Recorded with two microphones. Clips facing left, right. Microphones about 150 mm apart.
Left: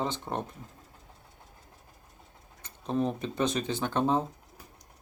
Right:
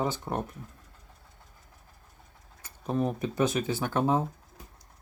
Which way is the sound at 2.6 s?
5° right (ahead or behind).